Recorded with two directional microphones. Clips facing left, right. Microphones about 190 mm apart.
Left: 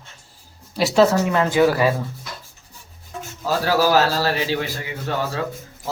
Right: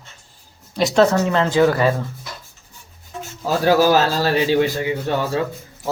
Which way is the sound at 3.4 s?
20° right (ahead or behind).